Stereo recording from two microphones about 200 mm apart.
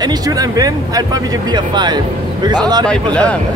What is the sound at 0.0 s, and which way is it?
Speech, 20° right (ahead or behind).